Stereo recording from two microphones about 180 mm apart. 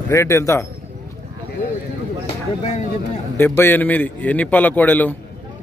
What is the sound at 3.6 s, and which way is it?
A man's voice, 10° left (ahead or behind).